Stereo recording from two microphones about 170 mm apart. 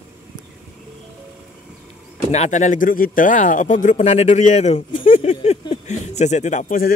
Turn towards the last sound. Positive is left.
turn(degrees=55)  # may be behind; listen again after turning